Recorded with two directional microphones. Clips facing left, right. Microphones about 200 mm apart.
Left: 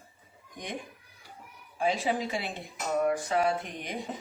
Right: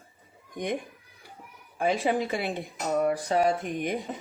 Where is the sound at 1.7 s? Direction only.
55° right (ahead or behind).